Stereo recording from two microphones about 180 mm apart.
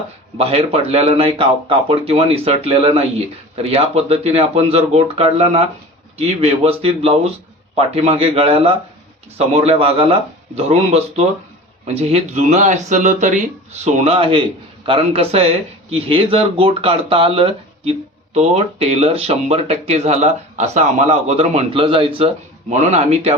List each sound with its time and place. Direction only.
0.3 s speech: 30° right (ahead or behind)